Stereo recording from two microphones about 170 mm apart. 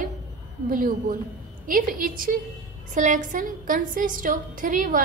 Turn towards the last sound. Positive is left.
turn(degrees=-50)  # may be behind; listen again after turning